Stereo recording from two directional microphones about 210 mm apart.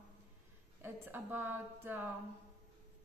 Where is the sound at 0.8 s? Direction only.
10° right (ahead or behind).